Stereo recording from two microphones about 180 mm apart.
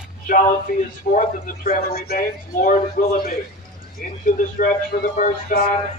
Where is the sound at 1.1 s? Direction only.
50° left (ahead or behind).